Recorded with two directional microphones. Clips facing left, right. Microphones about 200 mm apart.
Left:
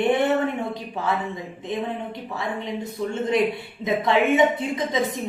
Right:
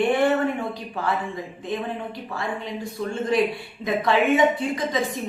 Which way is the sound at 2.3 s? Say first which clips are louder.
Left 1 dB; 20° left (ahead or behind).